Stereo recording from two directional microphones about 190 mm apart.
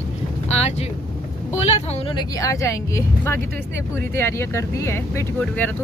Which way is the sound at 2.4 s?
15° left (ahead or behind).